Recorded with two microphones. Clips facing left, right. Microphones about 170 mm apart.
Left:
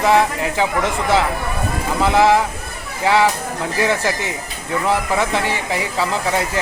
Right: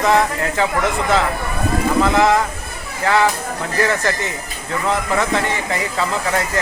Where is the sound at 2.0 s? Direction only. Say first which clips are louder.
Left 2 dB; 15° left (ahead or behind).